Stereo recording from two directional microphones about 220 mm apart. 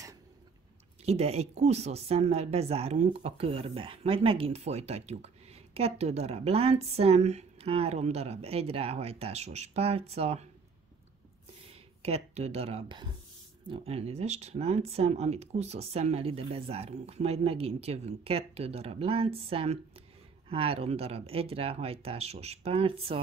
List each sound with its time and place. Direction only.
1.0 s speech: 30° right (ahead or behind)
11.6 s speech: 30° right (ahead or behind)